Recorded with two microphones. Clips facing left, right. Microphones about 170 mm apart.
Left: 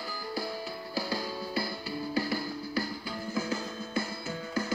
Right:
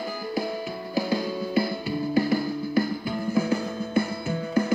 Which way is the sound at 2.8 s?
55° right (ahead or behind).